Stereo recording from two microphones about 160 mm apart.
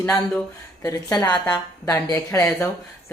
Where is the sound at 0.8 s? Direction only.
25° left (ahead or behind).